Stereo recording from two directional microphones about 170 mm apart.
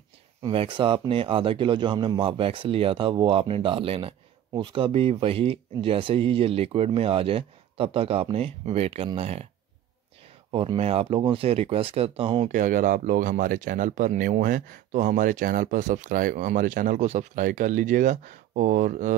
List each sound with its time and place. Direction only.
0.4 s speech: 30° right (ahead or behind)
10.5 s speech: 35° right (ahead or behind)
12.4 s speech: 50° right (ahead or behind)